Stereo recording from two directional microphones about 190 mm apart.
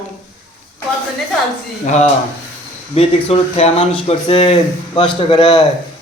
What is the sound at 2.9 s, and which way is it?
Speech, 35° left (ahead or behind).